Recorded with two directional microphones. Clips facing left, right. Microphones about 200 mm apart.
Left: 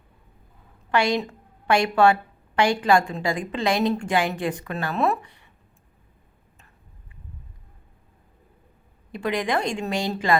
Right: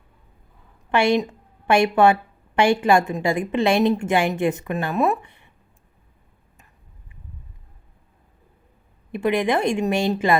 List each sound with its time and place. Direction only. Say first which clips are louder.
0.9 s a woman's voice: right 4 dB; 25° right (ahead or behind)
9.1 s a woman's voice: right 4 dB; 20° right (ahead or behind)